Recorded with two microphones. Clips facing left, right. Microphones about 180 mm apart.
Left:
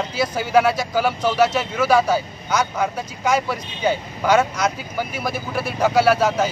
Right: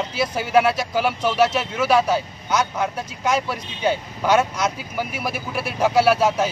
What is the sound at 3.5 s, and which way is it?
Speech, centre (ahead or behind).